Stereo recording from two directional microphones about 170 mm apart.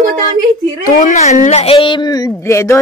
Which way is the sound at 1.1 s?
40° left (ahead or behind).